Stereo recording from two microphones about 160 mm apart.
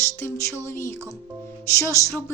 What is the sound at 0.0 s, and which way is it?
A woman's voice, 15° left (ahead or behind).